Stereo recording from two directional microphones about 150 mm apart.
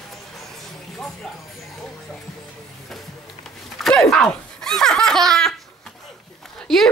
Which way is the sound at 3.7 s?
Centre (ahead or behind).